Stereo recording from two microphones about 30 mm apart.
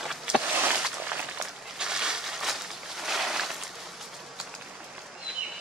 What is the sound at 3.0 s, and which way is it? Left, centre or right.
Boat, centre.